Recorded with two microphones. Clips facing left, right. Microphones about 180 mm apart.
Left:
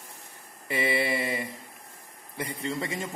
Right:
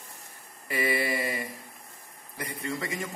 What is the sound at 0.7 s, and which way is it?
A man's voice, 25° left (ahead or behind).